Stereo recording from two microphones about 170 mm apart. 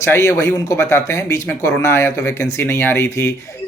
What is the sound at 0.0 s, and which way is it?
A woman's voice, 15° left (ahead or behind).